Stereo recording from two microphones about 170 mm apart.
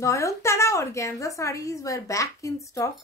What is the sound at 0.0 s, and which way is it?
A woman's voice, 20° left (ahead or behind).